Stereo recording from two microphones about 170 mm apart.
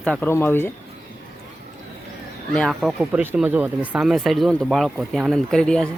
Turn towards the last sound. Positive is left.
turn(degrees=5)  # may be behind; listen again after turning